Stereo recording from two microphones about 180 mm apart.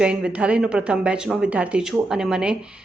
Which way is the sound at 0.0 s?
5° right (ahead or behind).